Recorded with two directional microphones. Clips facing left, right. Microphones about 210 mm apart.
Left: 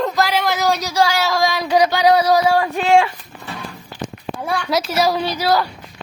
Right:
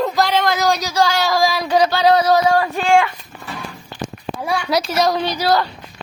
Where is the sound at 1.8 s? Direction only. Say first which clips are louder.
Even; 15° left (ahead or behind).